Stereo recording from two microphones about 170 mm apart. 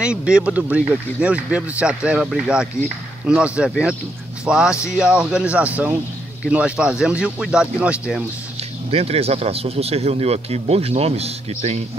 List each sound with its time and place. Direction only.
0.0 s speech: 5° right (ahead or behind)
8.9 s speech: 35° right (ahead or behind)